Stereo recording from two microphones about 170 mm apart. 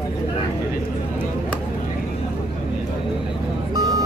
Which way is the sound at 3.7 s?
20° right (ahead or behind).